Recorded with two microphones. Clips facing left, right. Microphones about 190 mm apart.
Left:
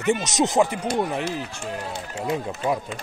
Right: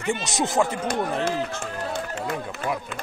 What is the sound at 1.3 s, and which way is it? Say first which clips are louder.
Speech: right 2 dB; 60° right (ahead or behind).